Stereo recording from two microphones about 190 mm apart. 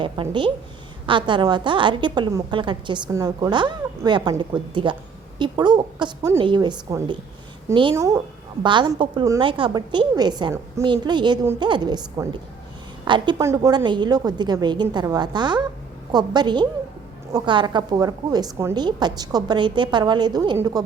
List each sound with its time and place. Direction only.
0.0 s a woman's voice: 25° right (ahead or behind)